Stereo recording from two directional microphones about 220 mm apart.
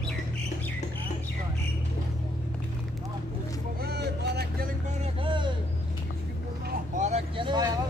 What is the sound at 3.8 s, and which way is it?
Vehicle, 45° right (ahead or behind).